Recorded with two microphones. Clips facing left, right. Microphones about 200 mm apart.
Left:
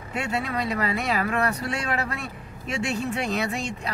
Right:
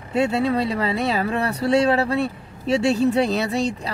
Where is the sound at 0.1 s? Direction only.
30° right (ahead or behind).